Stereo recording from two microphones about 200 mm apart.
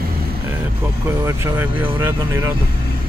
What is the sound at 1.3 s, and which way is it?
Speech, 10° right (ahead or behind).